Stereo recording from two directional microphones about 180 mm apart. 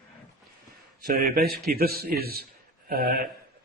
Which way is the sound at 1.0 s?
55° right (ahead or behind).